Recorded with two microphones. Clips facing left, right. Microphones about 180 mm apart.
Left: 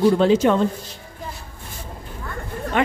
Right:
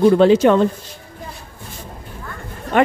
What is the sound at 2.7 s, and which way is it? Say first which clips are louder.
Speech: right 5 dB; 55° right (ahead or behind).